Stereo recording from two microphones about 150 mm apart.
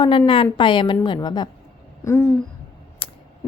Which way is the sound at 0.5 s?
35° left (ahead or behind).